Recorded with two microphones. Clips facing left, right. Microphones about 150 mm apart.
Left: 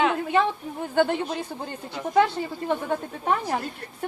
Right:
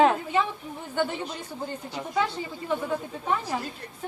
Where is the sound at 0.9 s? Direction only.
60° left (ahead or behind).